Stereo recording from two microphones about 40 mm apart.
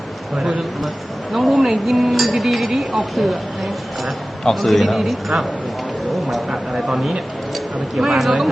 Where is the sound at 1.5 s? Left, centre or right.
Centre.